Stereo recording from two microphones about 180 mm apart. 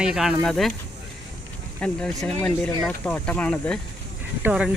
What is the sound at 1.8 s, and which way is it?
Speech, 5° left (ahead or behind).